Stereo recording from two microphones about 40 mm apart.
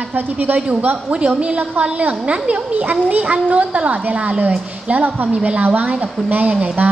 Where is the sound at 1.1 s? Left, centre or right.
Right.